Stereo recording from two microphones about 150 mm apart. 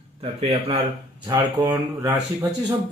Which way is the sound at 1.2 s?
30° right (ahead or behind).